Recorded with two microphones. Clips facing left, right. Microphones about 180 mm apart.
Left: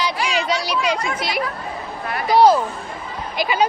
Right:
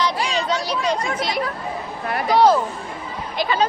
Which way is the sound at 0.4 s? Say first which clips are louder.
Left 1 dB; 80° left.